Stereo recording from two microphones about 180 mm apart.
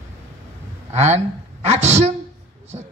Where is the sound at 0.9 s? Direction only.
40° right (ahead or behind).